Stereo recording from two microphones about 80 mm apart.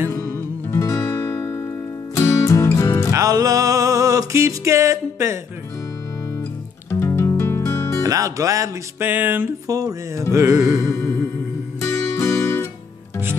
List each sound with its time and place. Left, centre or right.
0.1 s music: left
1.0 s music: left
3.1 s music: right
6.9 s music: left
8.0 s speech: right
9.0 s music: right
9.7 s speech: right
11.8 s music: left